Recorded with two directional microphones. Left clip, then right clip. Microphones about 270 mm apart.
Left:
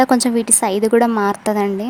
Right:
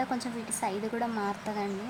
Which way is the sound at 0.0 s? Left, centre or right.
Left.